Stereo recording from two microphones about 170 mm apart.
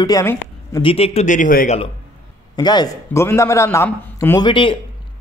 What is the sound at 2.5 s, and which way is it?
Speech, 25° left (ahead or behind).